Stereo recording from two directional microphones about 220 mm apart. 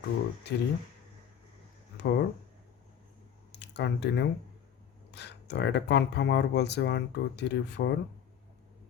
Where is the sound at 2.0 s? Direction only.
50° left (ahead or behind).